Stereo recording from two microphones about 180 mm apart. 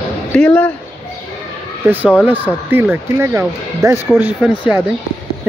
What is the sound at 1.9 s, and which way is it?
Speech, 10° right (ahead or behind).